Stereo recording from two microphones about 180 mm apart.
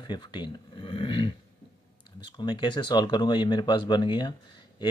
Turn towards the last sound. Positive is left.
turn(degrees=25)  # may be behind; listen again after turning